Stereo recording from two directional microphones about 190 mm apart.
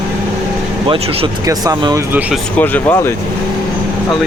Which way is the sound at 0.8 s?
25° right (ahead or behind).